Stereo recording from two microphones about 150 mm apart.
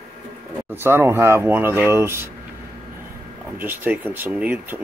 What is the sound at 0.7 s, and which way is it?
Speech, 15° right (ahead or behind).